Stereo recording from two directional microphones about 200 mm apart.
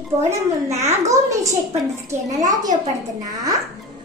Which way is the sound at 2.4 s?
20° right (ahead or behind).